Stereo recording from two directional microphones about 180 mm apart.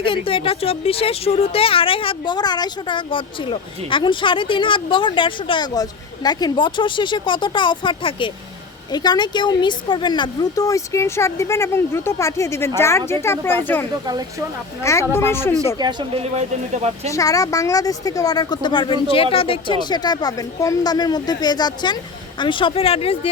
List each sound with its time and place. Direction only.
0.0 s a woman's voice: 30° left (ahead or behind); by 13.6 s 15° left (ahead or behind)
14.1 s speech: 20° right (ahead or behind)
15.1 s speech: 15° left (ahead or behind)
15.8 s speech: 25° right (ahead or behind)
16.3 s speech: 40° right (ahead or behind)
17.1 s a woman's voice: 20° left (ahead or behind)